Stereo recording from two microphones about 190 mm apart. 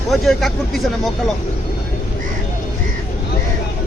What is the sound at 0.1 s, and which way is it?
Speech, centre (ahead or behind).